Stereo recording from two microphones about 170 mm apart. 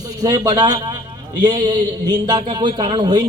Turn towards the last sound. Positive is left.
turn(degrees=-25)  # may be behind; listen again after turning